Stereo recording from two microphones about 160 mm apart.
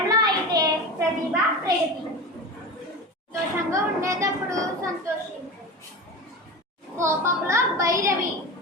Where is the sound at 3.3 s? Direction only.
20° right (ahead or behind).